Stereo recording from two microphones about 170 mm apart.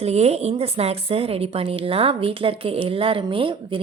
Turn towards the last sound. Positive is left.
turn(degrees=-30)  # may be behind; listen again after turning